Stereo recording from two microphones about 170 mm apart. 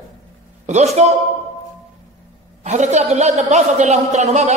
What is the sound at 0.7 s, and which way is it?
Speech, 40° right (ahead or behind).